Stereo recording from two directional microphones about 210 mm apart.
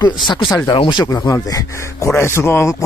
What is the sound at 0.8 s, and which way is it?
Speech, 20° left (ahead or behind).